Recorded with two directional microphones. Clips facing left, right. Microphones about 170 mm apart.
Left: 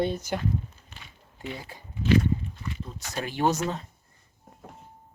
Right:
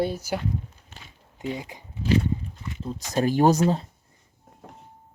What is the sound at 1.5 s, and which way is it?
Speech, 20° right (ahead or behind).